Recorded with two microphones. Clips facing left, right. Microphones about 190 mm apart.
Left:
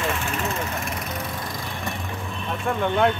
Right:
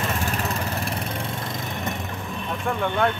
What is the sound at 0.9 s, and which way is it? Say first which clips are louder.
Vehicle: right 1 dB; 30° right (ahead or behind).